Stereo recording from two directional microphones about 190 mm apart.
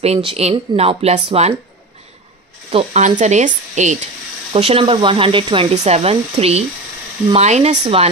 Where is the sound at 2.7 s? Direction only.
35° right (ahead or behind).